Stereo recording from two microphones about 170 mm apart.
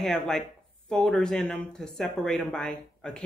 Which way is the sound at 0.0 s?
5° left (ahead or behind).